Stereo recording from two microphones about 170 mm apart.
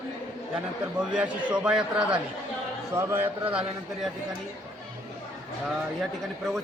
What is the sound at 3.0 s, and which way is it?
A man's voice, 15° right (ahead or behind).